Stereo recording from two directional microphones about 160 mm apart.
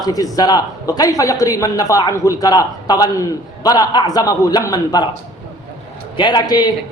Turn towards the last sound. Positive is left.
turn(degrees=25)  # may be behind; listen again after turning